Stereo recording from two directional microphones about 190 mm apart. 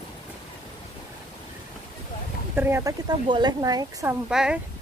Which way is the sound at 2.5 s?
10° right (ahead or behind).